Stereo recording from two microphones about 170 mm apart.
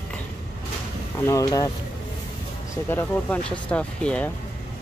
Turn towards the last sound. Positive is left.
turn(degrees=5)  # may be behind; listen again after turning